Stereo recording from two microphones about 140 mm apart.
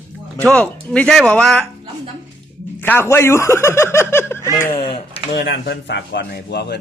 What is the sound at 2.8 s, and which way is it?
A child's voice, 15° left (ahead or behind).